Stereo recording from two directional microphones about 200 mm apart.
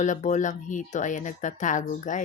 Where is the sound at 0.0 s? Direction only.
35° left (ahead or behind).